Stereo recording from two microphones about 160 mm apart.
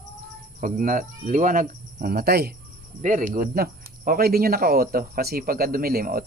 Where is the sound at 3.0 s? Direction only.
55° right (ahead or behind).